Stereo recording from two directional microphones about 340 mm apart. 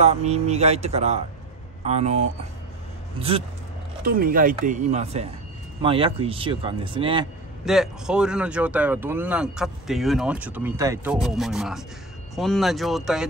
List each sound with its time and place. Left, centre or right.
0.0 s speech: centre
7.6 s speech: centre